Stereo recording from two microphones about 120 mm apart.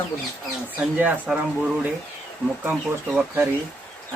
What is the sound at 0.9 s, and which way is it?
Speech, 10° right (ahead or behind).